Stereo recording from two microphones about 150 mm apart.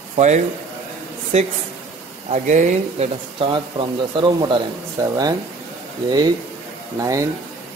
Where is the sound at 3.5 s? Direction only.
35° right (ahead or behind).